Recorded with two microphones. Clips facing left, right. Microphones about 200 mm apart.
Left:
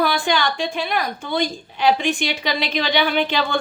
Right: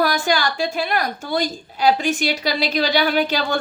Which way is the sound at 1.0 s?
40° right (ahead or behind).